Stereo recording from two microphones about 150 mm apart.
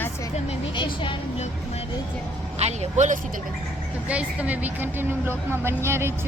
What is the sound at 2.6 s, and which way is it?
Speech, 50° right (ahead or behind).